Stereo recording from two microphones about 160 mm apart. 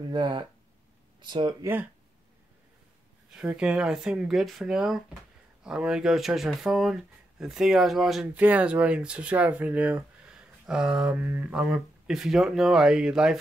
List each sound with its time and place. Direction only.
0.1 s speech: 30° right (ahead or behind)
1.6 s speech: 15° right (ahead or behind)
3.3 s speech: 5° right (ahead or behind)